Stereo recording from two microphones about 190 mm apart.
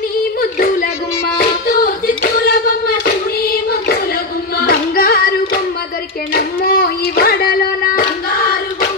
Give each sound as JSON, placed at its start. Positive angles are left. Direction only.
{"t": 0.4, "sound": "child singing", "side_deg": 50}
{"t": 1.4, "sound": "hands", "side_deg": 55}
{"t": 4.6, "sound": "female singing", "side_deg": 50}
{"t": 6.3, "sound": "a sound", "side_deg": 50}